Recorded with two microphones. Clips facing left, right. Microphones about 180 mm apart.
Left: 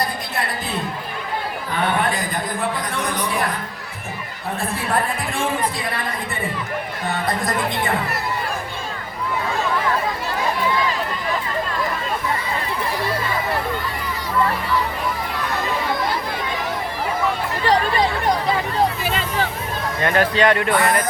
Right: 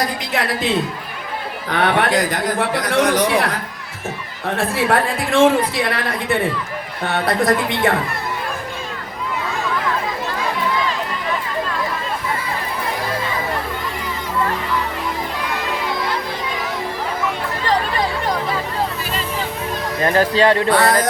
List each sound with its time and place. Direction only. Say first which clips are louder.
0.3 s a man's voice: right 8 dB; 90° right; by 7.9 s 75° right (ahead or behind)
20.0 s speech: right 3 dB; 35° right (ahead or behind)